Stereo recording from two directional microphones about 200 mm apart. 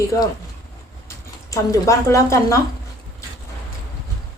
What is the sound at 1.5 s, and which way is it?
A woman's voice, 15° left (ahead or behind).